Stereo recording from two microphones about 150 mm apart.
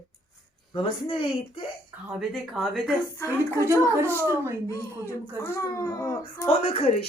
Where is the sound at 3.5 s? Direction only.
20° right (ahead or behind).